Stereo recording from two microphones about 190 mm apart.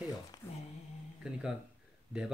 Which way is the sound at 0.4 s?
10° left (ahead or behind).